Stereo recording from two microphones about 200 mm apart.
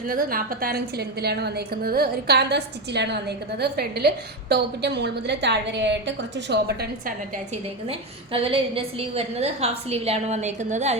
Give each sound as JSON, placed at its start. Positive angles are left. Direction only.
{"t": 0.1, "sound": "a woman's voice", "side_deg": -45}
{"t": 7.9, "sound": "a woman's voice", "side_deg": -25}